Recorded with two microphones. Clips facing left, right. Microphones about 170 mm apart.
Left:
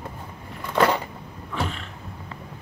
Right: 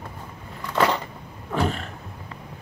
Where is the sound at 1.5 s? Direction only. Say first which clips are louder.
Right 5 dB; 45° right (ahead or behind).